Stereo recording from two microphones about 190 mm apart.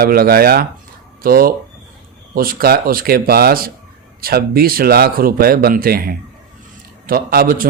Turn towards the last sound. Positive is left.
turn(degrees=-50)  # may be behind; listen again after turning